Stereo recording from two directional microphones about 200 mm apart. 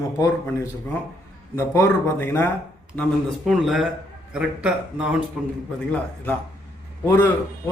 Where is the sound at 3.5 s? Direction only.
5° right (ahead or behind).